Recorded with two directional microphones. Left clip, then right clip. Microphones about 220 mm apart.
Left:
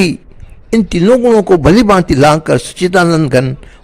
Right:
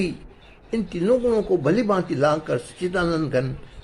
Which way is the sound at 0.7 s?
45° left (ahead or behind).